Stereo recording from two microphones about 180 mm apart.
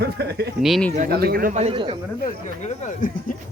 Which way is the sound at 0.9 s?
55° right (ahead or behind).